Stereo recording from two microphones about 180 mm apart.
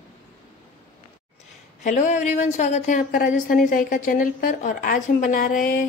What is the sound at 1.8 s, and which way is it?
A woman's voice, 40° left (ahead or behind).